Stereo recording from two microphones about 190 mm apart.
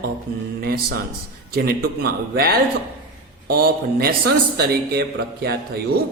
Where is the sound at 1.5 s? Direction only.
55° right (ahead or behind).